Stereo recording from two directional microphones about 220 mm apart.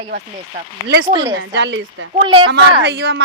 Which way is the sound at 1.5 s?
55° right (ahead or behind).